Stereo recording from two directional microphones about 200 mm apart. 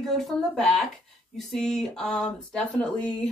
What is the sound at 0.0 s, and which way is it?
Speech, centre (ahead or behind).